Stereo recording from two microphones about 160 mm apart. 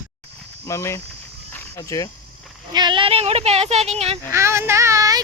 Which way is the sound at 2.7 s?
30° right (ahead or behind).